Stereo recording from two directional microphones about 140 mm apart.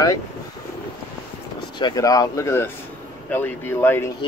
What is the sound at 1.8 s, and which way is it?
Speech, 25° left (ahead or behind).